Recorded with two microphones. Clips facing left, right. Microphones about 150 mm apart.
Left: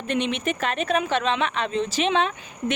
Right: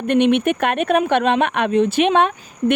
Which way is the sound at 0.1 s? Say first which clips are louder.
Right 10 dB; 60° right (ahead or behind).